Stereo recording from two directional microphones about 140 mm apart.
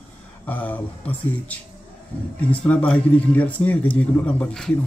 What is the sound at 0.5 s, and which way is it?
Speech, 10° left (ahead or behind).